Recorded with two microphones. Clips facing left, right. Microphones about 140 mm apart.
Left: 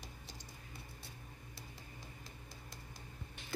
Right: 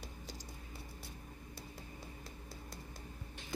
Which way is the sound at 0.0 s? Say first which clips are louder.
Right 4 dB; 40° right (ahead or behind).